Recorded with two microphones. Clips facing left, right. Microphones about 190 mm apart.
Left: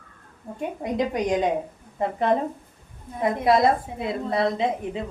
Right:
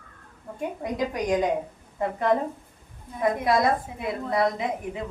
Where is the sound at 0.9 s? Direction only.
25° left (ahead or behind).